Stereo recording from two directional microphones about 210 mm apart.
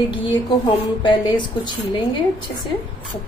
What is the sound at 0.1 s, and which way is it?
A woman's voice, 25° left (ahead or behind).